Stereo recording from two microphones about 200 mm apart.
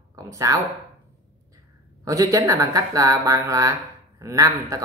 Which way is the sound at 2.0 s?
15° right (ahead or behind).